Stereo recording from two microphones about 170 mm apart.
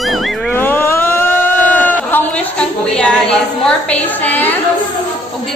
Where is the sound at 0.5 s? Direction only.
10° left (ahead or behind).